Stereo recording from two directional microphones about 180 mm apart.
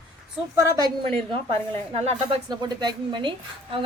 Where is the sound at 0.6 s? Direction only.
20° right (ahead or behind).